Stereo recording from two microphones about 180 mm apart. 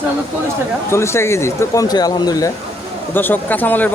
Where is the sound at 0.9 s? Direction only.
15° left (ahead or behind).